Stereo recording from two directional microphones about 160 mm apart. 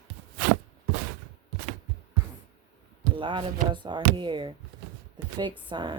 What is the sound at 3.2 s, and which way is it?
Speech, 30° right (ahead or behind).